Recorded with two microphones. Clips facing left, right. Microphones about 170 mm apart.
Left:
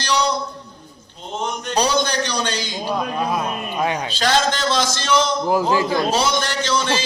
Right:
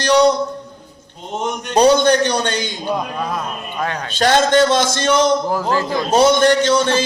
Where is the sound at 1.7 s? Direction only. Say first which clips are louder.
Right 8 dB; 55° right (ahead or behind).